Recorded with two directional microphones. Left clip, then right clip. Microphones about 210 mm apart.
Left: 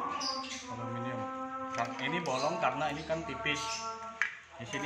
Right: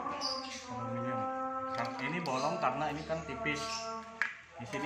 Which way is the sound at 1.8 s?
10° left (ahead or behind).